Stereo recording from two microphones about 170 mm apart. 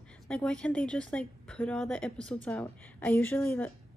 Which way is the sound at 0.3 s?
5° left (ahead or behind).